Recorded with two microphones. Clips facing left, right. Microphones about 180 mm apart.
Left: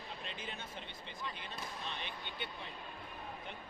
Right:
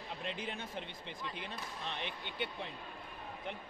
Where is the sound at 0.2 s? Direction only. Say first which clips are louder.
Right 8 dB; 75° right (ahead or behind).